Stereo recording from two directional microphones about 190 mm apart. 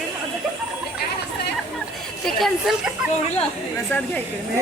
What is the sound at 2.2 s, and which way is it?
Speech, centre (ahead or behind).